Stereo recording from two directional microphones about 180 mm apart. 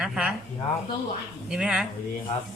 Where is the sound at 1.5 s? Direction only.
5° right (ahead or behind).